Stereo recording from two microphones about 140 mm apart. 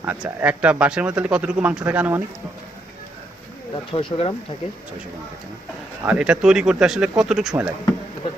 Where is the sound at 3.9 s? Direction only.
40° left (ahead or behind).